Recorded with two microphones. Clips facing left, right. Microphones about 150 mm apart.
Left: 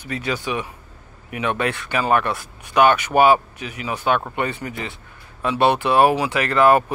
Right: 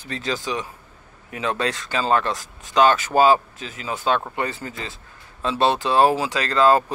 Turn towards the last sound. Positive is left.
turn(degrees=15)  # may be behind; listen again after turning